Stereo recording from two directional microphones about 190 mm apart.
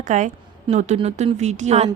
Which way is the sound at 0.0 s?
40° right (ahead or behind).